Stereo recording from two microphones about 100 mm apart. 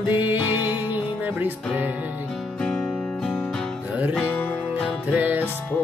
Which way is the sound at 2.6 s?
10° left (ahead or behind).